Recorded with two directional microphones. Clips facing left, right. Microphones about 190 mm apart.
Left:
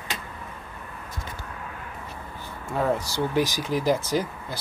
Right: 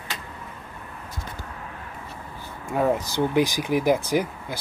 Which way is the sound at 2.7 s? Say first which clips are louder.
Right 2 dB; 15° right (ahead or behind).